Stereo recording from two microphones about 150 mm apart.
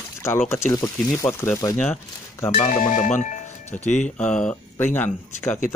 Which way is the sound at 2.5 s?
55° left (ahead or behind).